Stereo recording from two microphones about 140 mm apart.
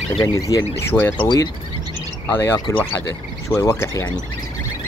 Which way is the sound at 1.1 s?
30° left (ahead or behind).